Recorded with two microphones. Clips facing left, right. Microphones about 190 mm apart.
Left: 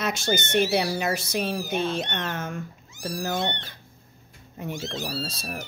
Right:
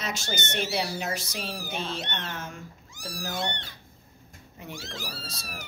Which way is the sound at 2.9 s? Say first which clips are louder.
Left 8 dB; 25° left (ahead or behind).